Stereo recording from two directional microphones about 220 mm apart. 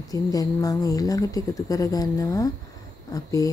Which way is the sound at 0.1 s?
15° left (ahead or behind).